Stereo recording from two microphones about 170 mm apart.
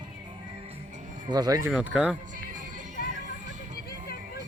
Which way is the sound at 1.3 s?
25° right (ahead or behind).